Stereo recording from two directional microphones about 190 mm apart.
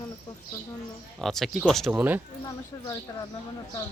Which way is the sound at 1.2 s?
Centre (ahead or behind).